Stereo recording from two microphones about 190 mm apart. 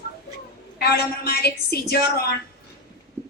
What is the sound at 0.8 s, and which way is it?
A woman's voice, 55° left (ahead or behind).